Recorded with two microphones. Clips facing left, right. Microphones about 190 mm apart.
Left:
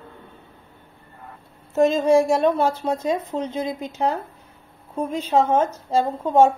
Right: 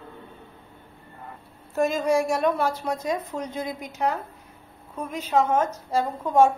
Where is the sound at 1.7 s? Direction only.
25° left (ahead or behind).